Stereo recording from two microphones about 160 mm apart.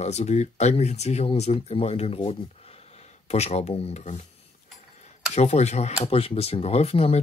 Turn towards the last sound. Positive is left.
turn(degrees=40)  # may be behind; listen again after turning